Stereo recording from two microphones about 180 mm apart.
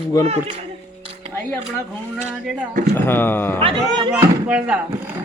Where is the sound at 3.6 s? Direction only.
25° right (ahead or behind).